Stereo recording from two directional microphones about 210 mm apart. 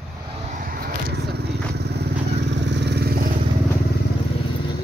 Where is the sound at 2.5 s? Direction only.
55° right (ahead or behind).